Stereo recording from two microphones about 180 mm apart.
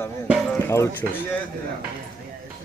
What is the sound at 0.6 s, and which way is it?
Speech, 15° left (ahead or behind).